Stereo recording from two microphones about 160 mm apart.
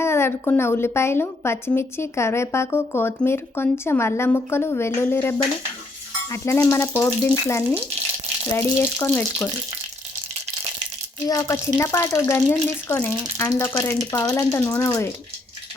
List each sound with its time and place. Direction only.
0.0 s a woman's voice: 15° left (ahead or behind)
11.3 s a woman's voice: 20° left (ahead or behind)